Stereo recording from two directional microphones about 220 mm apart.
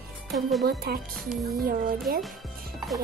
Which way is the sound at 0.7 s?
45° right (ahead or behind).